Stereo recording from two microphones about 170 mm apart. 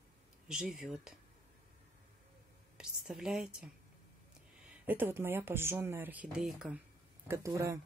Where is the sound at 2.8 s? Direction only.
5° right (ahead or behind).